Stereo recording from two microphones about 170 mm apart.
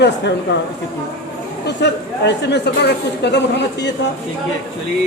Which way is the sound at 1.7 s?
85° left.